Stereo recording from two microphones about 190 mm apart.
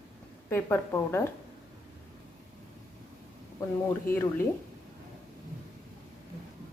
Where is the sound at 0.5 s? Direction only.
10° left (ahead or behind).